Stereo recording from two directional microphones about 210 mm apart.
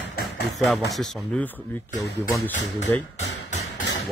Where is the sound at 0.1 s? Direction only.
45° left (ahead or behind).